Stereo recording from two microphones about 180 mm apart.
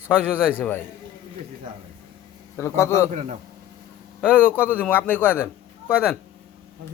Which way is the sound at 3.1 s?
40° right (ahead or behind).